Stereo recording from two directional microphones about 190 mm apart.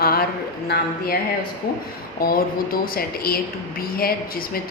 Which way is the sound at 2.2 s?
50° left (ahead or behind).